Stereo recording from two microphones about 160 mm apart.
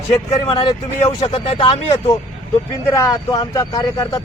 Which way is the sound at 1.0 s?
40° left (ahead or behind).